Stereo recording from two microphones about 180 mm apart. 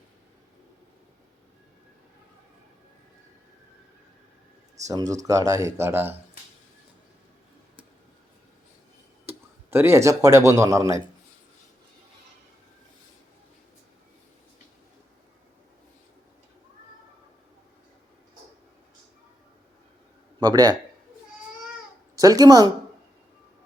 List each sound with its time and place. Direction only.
4.9 s a man's voice: 20° right (ahead or behind)
9.2 s speech: 15° right (ahead or behind)
20.4 s a man's voice: 25° right (ahead or behind)
22.1 s speech: 20° right (ahead or behind)